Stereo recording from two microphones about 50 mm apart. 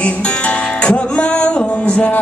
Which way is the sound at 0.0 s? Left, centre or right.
Left.